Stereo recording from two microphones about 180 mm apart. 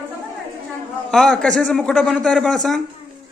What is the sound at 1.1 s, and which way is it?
A man's voice, centre (ahead or behind).